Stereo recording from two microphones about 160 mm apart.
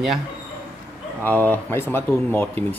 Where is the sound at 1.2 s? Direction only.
10° left (ahead or behind).